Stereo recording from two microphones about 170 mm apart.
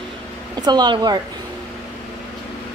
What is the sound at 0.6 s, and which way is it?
Speech, 25° right (ahead or behind).